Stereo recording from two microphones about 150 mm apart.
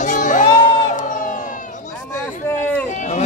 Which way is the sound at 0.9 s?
60° left (ahead or behind).